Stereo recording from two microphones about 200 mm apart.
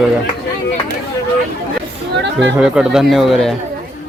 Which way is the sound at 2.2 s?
65° right (ahead or behind).